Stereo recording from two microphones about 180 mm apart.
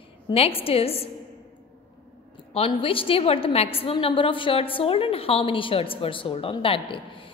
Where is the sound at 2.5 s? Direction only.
30° left (ahead or behind).